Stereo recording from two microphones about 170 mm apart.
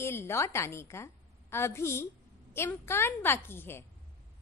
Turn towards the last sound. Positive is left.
turn(degrees=15)  # may be behind; listen again after turning